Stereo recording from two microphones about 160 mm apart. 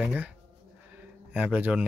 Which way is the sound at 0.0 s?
10° right (ahead or behind).